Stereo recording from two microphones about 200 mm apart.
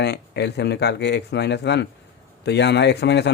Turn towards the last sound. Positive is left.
turn(degrees=60)  # may be behind; listen again after turning